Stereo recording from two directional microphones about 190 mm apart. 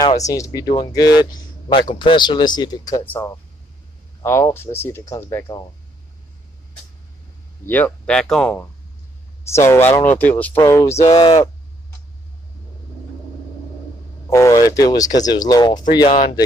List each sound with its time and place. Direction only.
0.2 s a man's voice: 20° left (ahead or behind)
7.6 s speech: 10° left (ahead or behind)
11.1 s speech: 30° left (ahead or behind)
14.3 s speech: 15° left (ahead or behind)